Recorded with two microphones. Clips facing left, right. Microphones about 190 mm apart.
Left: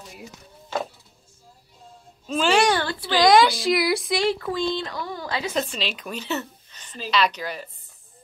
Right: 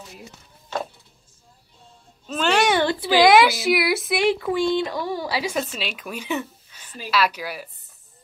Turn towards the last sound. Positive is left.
turn(degrees=-10)  # may be behind; listen again after turning